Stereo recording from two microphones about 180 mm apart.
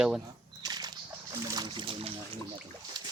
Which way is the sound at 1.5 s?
25° right (ahead or behind).